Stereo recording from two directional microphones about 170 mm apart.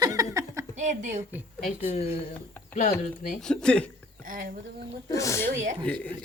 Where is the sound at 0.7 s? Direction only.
45° right (ahead or behind).